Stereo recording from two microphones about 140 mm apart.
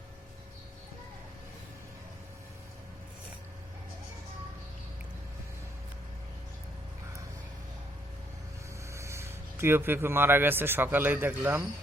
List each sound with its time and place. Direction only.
8.9 s speech: 20° right (ahead or behind)